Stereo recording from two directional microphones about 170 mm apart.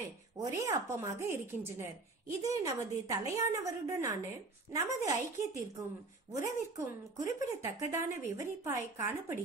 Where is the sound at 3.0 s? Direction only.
20° right (ahead or behind).